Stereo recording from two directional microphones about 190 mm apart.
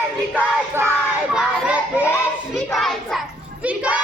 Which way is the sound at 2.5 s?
Centre (ahead or behind).